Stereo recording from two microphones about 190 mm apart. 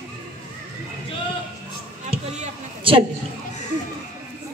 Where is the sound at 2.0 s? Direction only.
35° right (ahead or behind).